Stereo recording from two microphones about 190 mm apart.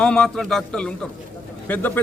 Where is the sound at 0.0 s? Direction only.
5° left (ahead or behind).